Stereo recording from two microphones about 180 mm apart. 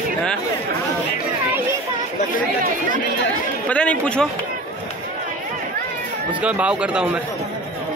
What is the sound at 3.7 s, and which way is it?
Speech, 5° left (ahead or behind).